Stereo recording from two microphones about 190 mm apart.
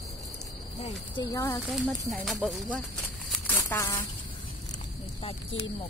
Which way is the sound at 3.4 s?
15° left (ahead or behind).